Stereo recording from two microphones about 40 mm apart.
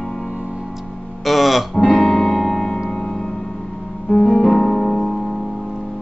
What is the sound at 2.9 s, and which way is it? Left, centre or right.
Music, centre.